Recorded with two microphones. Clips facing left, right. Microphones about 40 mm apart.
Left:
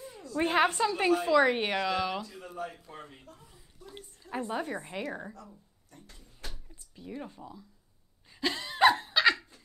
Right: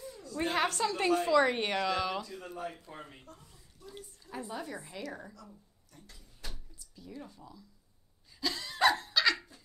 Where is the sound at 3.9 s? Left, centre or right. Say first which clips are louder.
Left 6 dB; left.